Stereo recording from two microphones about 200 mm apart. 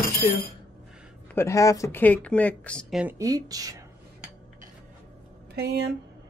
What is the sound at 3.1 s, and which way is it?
Speech, 20° right (ahead or behind).